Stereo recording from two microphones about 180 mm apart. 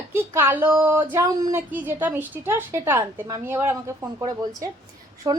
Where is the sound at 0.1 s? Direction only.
10° right (ahead or behind).